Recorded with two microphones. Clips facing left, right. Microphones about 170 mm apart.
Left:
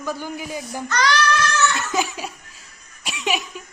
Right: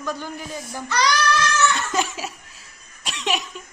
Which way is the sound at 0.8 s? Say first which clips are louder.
Even; 10° right (ahead or behind).